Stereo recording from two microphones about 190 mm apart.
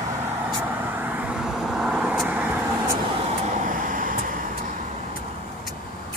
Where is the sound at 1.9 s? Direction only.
5° right (ahead or behind).